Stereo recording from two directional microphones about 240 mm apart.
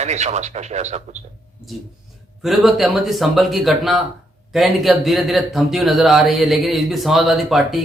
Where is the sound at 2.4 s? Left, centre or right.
Centre.